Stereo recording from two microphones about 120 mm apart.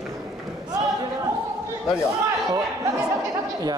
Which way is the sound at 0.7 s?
35° right (ahead or behind).